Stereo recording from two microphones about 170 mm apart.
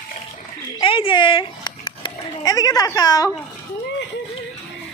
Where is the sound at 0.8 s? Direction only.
30° left (ahead or behind).